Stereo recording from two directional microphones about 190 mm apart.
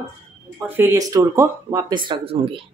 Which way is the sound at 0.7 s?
10° right (ahead or behind).